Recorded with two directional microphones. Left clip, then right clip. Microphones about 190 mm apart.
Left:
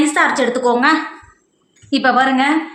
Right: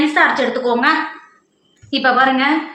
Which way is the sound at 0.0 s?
60° left (ahead or behind).